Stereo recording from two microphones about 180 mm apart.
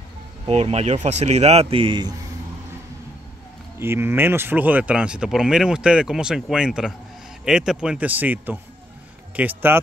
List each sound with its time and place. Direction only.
0.5 s speech: 35° right (ahead or behind)
3.8 s speech: 15° right (ahead or behind)